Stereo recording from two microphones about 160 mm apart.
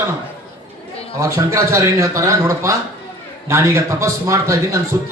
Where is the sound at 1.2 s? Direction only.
20° right (ahead or behind).